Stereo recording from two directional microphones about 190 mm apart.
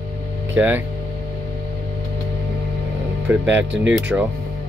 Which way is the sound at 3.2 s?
10° right (ahead or behind).